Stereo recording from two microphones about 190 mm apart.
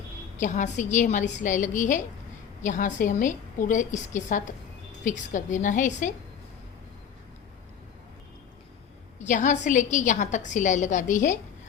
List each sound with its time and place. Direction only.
0.3 s a woman's voice: 40° left (ahead or behind)
9.1 s a woman's voice: 40° left (ahead or behind)